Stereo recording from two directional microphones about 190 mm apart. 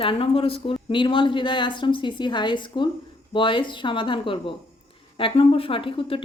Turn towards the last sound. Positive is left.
turn(degrees=25)  # may be behind; listen again after turning